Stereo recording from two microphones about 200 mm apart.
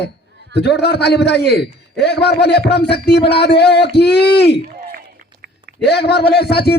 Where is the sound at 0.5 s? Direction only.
55° left (ahead or behind).